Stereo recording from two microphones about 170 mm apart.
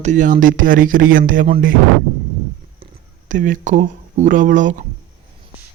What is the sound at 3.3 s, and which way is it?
Speech, 50° right (ahead or behind).